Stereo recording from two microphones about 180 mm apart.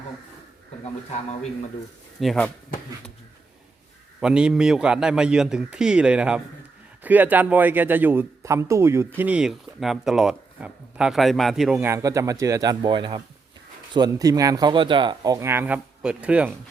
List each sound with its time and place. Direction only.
2.2 s a man's voice: centre (ahead or behind)
4.2 s a man's voice: 5° right (ahead or behind)
11.8 s speech: 15° right (ahead or behind)